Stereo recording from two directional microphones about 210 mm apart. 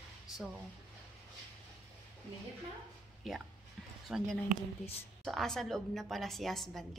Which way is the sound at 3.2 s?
Centre (ahead or behind).